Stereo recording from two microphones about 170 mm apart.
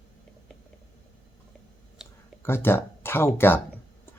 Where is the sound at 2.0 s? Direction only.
5° right (ahead or behind).